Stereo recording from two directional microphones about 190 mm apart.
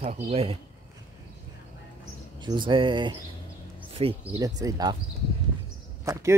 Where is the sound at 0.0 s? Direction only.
30° right (ahead or behind).